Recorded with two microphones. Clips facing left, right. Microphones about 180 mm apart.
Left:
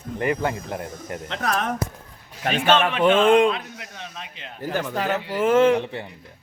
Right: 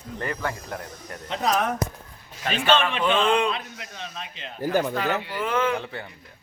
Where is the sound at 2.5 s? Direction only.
55° left (ahead or behind).